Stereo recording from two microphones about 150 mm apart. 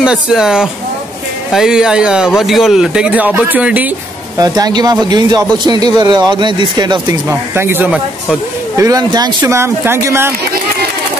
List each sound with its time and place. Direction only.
0.0 s speech: 5° right (ahead or behind)
4.4 s speech: 25° right (ahead or behind); by 8.4 s 10° right (ahead or behind)
8.7 s speech: 25° right (ahead or behind)